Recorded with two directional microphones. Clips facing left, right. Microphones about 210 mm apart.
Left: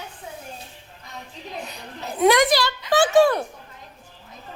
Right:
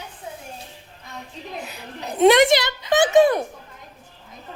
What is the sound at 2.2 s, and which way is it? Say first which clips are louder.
A child's voice: right 3 dB; 25° right (ahead or behind).